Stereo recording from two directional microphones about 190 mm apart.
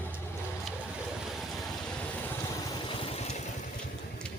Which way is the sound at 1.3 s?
Centre (ahead or behind).